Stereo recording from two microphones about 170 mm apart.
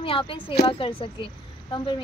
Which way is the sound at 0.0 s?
30° left (ahead or behind).